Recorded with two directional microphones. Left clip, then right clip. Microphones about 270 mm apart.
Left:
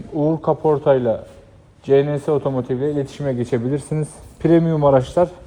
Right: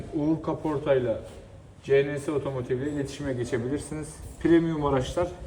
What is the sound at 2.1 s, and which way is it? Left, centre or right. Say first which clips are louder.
Speech: left 10 dB; right.